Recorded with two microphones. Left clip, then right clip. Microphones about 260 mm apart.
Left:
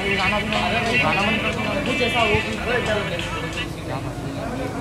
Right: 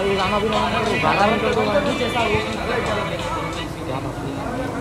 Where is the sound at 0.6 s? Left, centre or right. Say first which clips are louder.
Right 1 dB; right.